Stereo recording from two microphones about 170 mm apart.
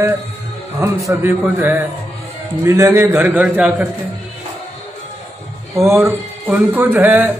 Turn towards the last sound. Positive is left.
turn(degrees=-10)  # may be behind; listen again after turning